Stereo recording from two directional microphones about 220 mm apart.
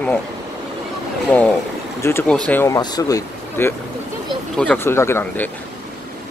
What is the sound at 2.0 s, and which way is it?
Speech, 10° left (ahead or behind).